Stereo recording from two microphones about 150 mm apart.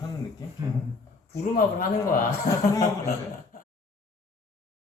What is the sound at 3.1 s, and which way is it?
Chuckle, 65° left (ahead or behind).